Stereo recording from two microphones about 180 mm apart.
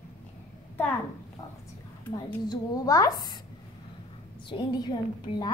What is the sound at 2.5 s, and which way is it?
Speech, 20° left (ahead or behind).